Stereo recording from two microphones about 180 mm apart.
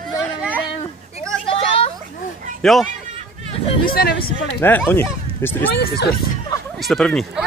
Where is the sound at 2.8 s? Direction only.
35° right (ahead or behind).